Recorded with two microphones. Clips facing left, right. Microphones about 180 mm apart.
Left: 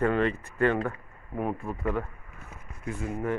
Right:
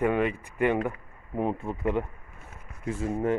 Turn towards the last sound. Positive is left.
turn(degrees=-25)  # may be behind; listen again after turning